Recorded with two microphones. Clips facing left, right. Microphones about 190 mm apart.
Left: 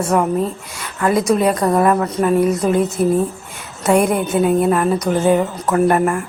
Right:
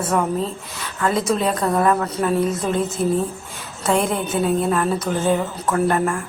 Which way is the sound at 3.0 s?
60° left (ahead or behind).